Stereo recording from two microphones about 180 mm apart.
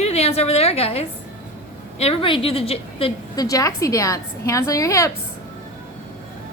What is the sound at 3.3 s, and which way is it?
A woman's voice, 20° left (ahead or behind).